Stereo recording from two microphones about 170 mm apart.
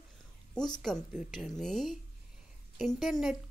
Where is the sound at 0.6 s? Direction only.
25° left (ahead or behind).